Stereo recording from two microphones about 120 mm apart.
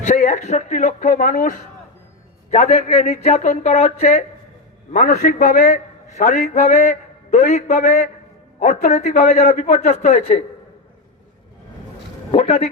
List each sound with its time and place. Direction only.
0.0 s a man's voice: 90° left
2.5 s a man's voice: 70° left (ahead or behind)
4.9 s a man's voice: 90° left
8.5 s a man's voice: 80° left
12.3 s speech: 60° left (ahead or behind)